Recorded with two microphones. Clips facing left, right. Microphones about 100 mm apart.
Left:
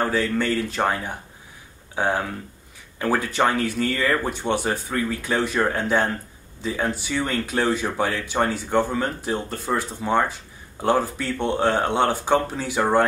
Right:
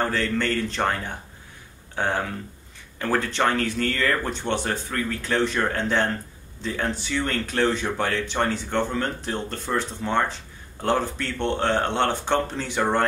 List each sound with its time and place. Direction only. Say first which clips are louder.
0.0 s speech: left 2 dB; 10° left (ahead or behind)